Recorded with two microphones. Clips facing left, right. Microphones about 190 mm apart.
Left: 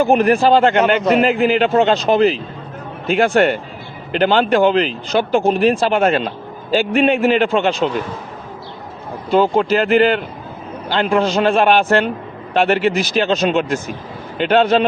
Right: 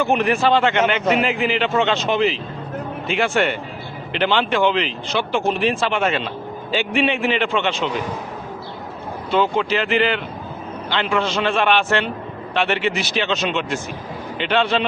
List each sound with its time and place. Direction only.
0.0 s speech: 35° left (ahead or behind)
9.3 s a man's voice: 40° left (ahead or behind)